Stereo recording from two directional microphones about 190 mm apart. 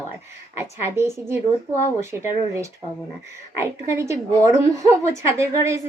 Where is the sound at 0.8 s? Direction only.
15° right (ahead or behind).